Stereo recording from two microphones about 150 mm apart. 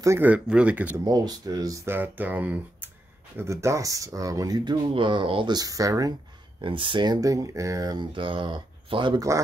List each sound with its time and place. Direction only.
0.0 s speech: 15° right (ahead or behind)
1.0 s speech: 25° right (ahead or behind)
6.6 s speech: 35° right (ahead or behind)